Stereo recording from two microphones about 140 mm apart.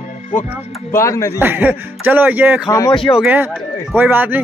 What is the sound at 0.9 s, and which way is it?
Speech, 20° left (ahead or behind).